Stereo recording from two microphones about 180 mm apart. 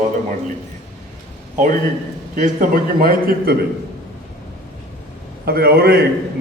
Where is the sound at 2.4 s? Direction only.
50° right (ahead or behind).